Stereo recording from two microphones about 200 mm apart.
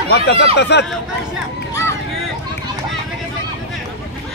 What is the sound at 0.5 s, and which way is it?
Speech, 60° left (ahead or behind).